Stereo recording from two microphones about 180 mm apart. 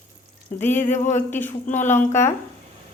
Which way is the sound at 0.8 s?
40° left (ahead or behind).